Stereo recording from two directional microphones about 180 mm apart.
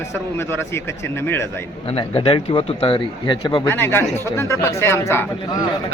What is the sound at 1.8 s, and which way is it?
Speech, 30° left (ahead or behind).